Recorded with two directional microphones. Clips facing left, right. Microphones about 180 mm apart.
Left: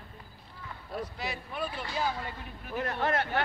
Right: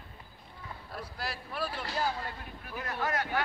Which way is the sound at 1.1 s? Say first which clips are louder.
Left 1 dB; 5° right (ahead or behind).